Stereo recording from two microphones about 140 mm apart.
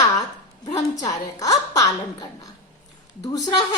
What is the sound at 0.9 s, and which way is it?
A woman's voice, 25° left (ahead or behind).